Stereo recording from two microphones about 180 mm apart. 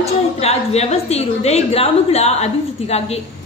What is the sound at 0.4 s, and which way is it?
A woman's voice, 35° left (ahead or behind).